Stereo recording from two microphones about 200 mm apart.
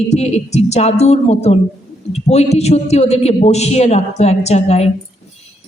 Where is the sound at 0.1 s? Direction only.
35° left (ahead or behind).